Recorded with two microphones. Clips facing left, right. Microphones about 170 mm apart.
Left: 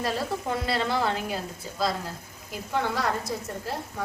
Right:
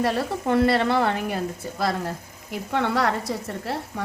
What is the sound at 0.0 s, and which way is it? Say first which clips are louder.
Dishes: right 5 dB; 65° right (ahead or behind).